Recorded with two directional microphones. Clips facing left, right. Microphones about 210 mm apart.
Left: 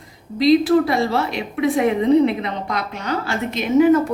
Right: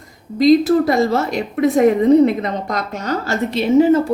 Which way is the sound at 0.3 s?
45° right (ahead or behind).